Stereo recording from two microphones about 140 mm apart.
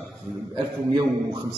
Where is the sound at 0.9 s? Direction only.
35° right (ahead or behind).